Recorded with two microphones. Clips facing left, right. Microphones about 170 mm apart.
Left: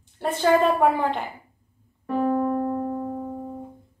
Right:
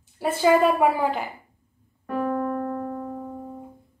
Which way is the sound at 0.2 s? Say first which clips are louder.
Right 1 dB; 5° right (ahead or behind).